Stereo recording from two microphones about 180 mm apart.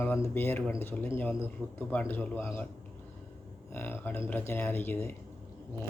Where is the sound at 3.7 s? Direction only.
10° left (ahead or behind).